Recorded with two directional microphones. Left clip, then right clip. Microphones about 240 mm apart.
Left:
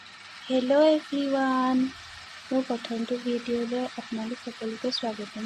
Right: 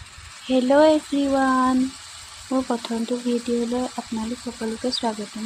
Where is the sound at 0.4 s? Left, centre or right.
Right.